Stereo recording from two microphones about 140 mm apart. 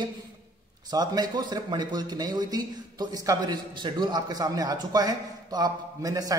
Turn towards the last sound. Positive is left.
turn(degrees=-25)  # may be behind; listen again after turning